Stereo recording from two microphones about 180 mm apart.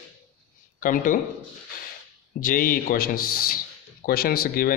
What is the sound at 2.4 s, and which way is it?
A man's voice, 50° left (ahead or behind).